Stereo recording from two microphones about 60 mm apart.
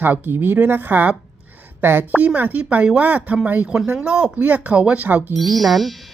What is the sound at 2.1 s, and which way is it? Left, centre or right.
Speech, right.